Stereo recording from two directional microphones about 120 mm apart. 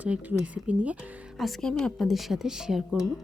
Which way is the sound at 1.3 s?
Centre (ahead or behind).